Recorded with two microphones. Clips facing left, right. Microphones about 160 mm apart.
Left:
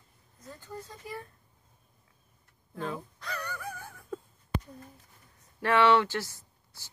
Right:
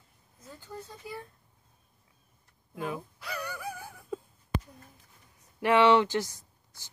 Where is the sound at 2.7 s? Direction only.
10° right (ahead or behind).